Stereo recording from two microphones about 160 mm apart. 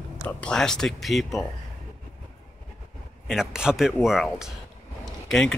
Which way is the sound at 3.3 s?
5° right (ahead or behind).